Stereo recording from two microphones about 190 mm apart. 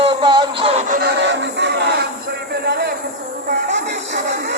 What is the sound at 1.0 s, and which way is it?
Music, 70° right (ahead or behind).